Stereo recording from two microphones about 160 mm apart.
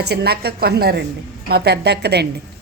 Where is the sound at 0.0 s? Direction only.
85° right.